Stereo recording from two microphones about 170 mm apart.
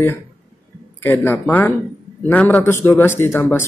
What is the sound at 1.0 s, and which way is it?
A man's voice, 10° left (ahead or behind).